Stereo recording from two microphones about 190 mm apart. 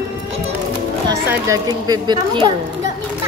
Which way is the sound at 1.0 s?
20° right (ahead or behind).